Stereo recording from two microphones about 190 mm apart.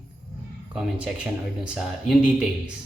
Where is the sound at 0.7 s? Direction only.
5° right (ahead or behind).